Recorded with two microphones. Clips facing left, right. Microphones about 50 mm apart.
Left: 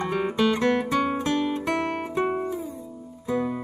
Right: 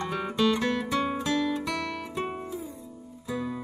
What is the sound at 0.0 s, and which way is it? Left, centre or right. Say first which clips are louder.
Music: left 3 dB; left.